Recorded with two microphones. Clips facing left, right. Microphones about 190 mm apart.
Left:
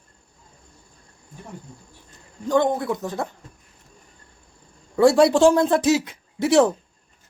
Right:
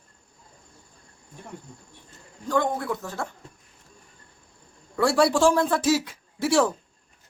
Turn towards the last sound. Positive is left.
turn(degrees=20)  # may be behind; listen again after turning